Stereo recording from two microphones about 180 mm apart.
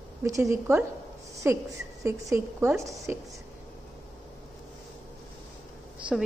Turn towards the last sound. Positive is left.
turn(degrees=-5)  # may be behind; listen again after turning